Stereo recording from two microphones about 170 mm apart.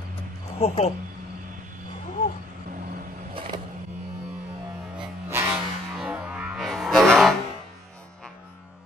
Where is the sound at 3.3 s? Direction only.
30° right (ahead or behind).